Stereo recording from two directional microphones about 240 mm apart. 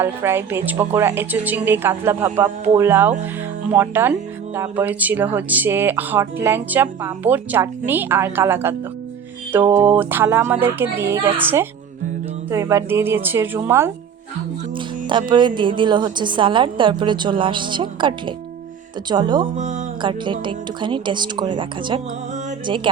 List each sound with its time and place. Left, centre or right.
0.0 s speech: centre
15.3 s a woman's voice: centre
19.5 s a woman's voice: right